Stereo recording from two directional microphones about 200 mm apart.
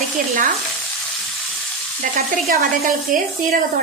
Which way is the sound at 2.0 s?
45° right (ahead or behind).